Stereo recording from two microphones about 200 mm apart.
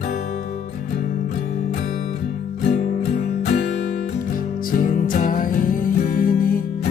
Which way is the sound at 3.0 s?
50° left (ahead or behind).